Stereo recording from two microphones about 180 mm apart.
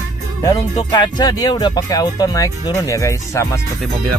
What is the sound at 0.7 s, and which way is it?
Speech, 25° left (ahead or behind).